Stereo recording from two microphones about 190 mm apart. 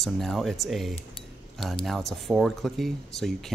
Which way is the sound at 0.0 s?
Centre (ahead or behind).